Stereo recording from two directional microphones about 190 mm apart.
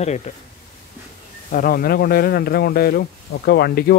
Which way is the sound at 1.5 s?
50° left (ahead or behind).